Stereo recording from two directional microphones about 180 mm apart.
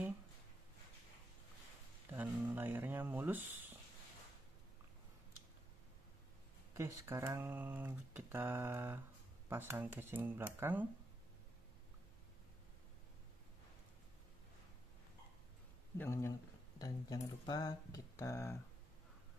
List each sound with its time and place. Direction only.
2.1 s speech: 10° right (ahead or behind)
6.7 s speech: 15° right (ahead or behind)
16.0 s speech: 15° left (ahead or behind)